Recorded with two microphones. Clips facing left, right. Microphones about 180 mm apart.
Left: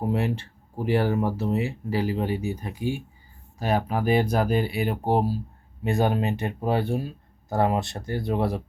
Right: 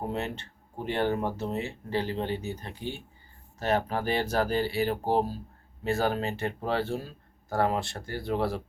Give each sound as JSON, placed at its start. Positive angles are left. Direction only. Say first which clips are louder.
{"t": 0.8, "sound": "speech", "louder": "left 5 dB", "side_deg": 10}